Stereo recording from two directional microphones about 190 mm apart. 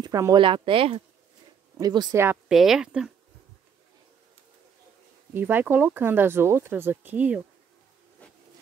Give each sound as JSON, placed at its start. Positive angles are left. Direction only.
{"t": 0.0, "sound": "speech", "side_deg": -20}
{"t": 2.4, "sound": "speech", "side_deg": 0}
{"t": 5.3, "sound": "speech", "side_deg": -10}
{"t": 8.2, "sound": "a sound", "side_deg": 5}